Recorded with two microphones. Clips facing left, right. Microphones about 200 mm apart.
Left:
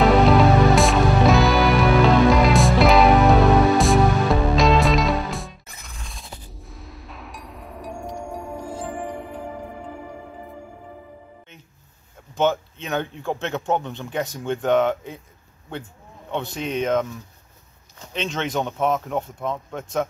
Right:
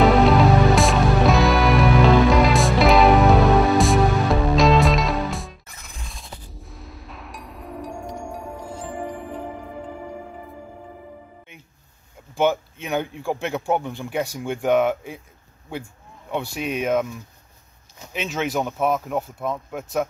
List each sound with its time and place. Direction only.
0.0 s music: centre (ahead or behind)
12.4 s speech: 10° right (ahead or behind)
16.5 s speech: 10° right (ahead or behind)